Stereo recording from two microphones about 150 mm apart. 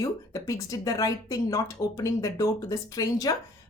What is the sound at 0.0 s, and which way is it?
Speech, 20° left (ahead or behind).